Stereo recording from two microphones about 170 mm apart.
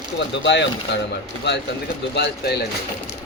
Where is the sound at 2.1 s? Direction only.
80° left.